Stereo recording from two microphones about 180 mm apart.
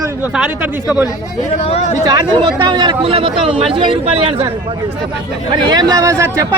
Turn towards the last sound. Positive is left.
turn(degrees=-20)  # may be behind; listen again after turning